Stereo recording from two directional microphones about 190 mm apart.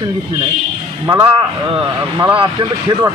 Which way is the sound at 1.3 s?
25° right (ahead or behind).